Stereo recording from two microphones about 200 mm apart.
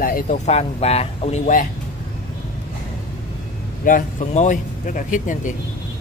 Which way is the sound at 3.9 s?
40° left (ahead or behind).